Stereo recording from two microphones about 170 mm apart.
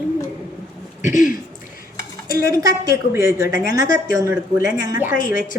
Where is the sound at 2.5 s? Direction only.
20° right (ahead or behind).